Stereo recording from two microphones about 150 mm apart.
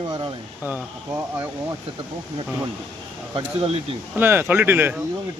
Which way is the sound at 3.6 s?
35° right (ahead or behind).